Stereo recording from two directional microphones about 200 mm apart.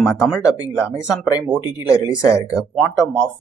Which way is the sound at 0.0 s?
Centre (ahead or behind).